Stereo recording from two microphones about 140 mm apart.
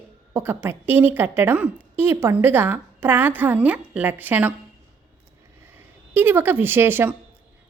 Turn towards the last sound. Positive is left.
turn(degrees=-15)  # may be behind; listen again after turning